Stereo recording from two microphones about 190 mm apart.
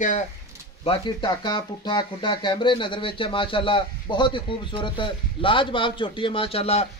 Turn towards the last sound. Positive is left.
turn(degrees=30)  # may be behind; listen again after turning